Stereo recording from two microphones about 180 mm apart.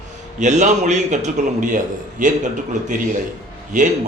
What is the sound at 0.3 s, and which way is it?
A man's voice, 40° right (ahead or behind).